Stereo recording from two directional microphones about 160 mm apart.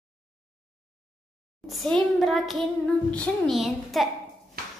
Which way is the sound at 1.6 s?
Centre (ahead or behind).